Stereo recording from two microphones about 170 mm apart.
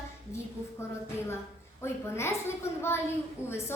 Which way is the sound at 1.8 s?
15° left (ahead or behind).